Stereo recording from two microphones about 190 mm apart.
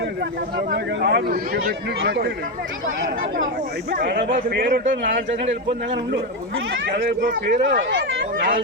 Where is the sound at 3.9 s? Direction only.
55° right (ahead or behind); by 6.9 s 80° right.